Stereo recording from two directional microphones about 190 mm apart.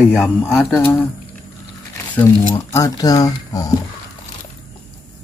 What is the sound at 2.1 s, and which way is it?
Speech, 15° left (ahead or behind).